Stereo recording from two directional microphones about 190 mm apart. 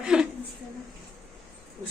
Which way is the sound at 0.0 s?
5° right (ahead or behind).